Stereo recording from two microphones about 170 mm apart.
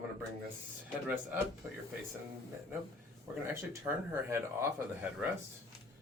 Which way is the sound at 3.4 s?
15° right (ahead or behind).